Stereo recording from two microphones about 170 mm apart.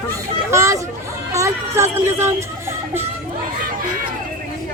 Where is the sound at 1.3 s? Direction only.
15° right (ahead or behind).